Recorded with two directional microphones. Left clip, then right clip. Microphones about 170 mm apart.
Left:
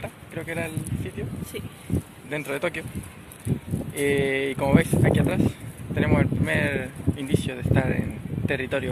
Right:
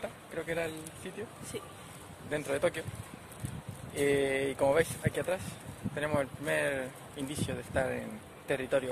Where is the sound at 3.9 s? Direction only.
Centre (ahead or behind).